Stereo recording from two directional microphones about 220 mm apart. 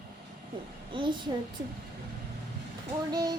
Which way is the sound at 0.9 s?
20° right (ahead or behind).